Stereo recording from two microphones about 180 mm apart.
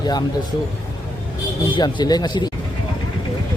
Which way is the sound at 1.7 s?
25° left (ahead or behind).